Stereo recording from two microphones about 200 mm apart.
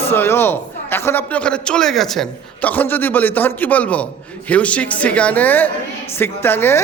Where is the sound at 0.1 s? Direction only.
10° left (ahead or behind).